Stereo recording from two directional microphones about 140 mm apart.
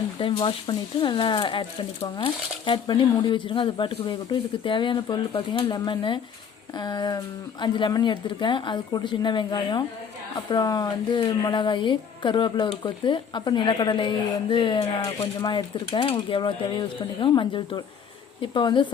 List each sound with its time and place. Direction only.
0.2 s speech: 35° left (ahead or behind)